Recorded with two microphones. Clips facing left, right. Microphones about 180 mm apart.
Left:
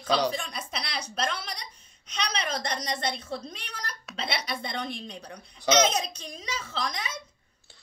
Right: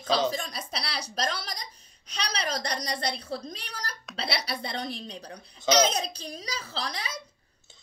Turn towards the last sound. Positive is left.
turn(degrees=-30)  # may be behind; listen again after turning